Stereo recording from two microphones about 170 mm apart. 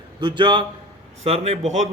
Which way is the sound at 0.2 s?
30° right (ahead or behind).